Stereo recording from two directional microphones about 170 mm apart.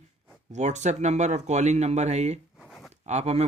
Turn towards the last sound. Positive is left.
turn(degrees=-40)  # may be behind; listen again after turning